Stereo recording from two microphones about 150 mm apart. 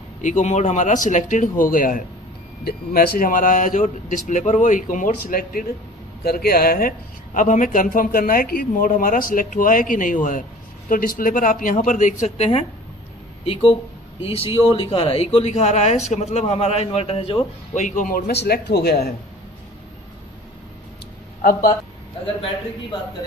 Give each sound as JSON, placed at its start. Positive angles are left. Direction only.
{"t": 0.2, "sound": "a man's voice", "side_deg": 55}
{"t": 2.6, "sound": "a man's voice", "side_deg": 90}
{"t": 7.3, "sound": "a man's voice", "side_deg": 60}
{"t": 17.7, "sound": "a man's voice", "side_deg": 60}